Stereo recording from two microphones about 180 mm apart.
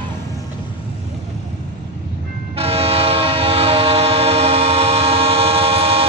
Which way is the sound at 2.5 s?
35° right (ahead or behind).